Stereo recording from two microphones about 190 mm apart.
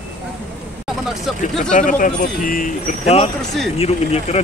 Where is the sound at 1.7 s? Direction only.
45° left (ahead or behind).